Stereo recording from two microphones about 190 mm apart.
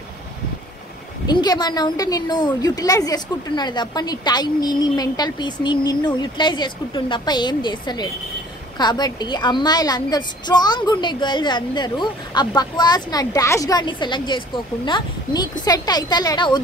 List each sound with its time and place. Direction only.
1.2 s a woman's voice: 20° left (ahead or behind)